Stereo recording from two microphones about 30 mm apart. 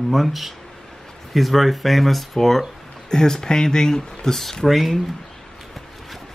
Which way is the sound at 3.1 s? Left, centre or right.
Left.